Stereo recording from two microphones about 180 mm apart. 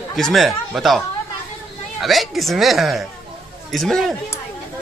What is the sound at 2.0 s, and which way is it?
A woman's voice, centre (ahead or behind).